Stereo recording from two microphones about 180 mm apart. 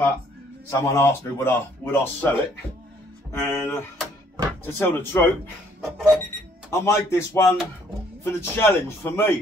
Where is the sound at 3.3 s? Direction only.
15° left (ahead or behind).